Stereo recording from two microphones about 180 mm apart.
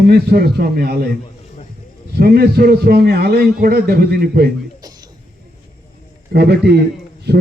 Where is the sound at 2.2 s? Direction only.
60° right (ahead or behind).